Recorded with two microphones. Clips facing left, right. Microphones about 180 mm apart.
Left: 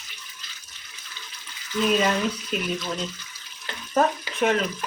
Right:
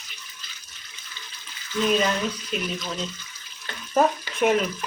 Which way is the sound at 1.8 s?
5° left (ahead or behind).